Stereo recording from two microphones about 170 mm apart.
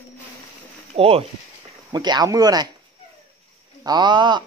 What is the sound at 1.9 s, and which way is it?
Speech, 25° right (ahead or behind).